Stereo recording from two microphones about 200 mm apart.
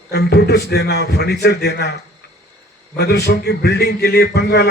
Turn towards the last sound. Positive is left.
turn(degrees=55)  # may be behind; listen again after turning